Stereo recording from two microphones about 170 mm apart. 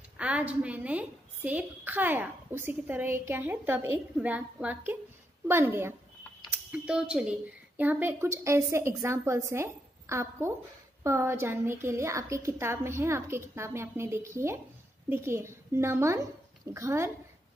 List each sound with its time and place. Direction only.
0.2 s a woman's voice: 10° right (ahead or behind)